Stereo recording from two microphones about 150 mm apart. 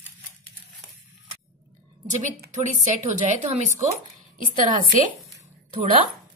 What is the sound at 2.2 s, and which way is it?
A woman's voice, 55° right (ahead or behind).